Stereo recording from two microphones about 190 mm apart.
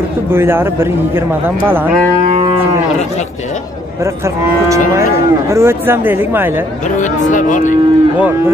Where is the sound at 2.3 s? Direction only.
30° right (ahead or behind).